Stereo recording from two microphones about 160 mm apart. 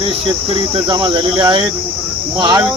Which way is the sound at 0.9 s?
30° right (ahead or behind).